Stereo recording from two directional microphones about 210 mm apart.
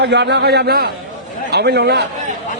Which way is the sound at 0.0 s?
55° right (ahead or behind).